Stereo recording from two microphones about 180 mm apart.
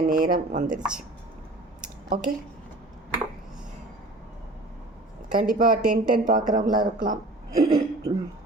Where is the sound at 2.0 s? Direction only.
45° right (ahead or behind).